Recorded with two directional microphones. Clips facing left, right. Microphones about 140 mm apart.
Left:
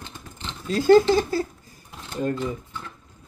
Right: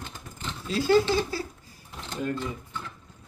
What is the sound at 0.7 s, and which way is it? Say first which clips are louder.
Speech: left 6 dB; 45° left (ahead or behind).